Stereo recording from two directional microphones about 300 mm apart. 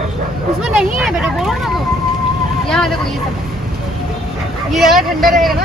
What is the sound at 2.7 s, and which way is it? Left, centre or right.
Speech, centre.